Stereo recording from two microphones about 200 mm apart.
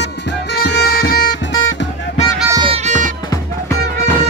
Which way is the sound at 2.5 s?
30° right (ahead or behind).